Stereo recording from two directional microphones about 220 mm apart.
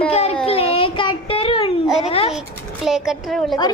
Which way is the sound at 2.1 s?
25° left (ahead or behind).